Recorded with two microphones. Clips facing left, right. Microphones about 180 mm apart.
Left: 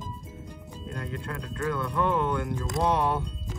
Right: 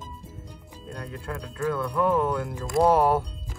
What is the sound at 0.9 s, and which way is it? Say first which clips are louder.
Speech: right 1 dB; centre (ahead or behind).